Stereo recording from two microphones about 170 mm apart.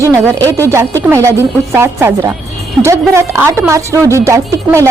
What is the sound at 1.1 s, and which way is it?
Speech, 15° right (ahead or behind).